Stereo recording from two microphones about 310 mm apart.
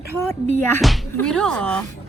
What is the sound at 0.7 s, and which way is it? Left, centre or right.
Speech, centre.